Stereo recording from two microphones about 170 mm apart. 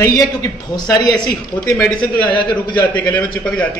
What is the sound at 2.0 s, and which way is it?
Speech, 30° left (ahead or behind).